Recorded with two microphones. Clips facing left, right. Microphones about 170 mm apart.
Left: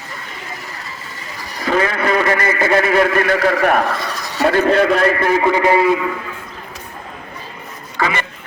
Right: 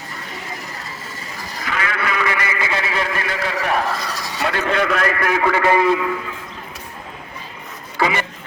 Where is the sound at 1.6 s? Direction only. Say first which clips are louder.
Left 8 dB; 35° left (ahead or behind).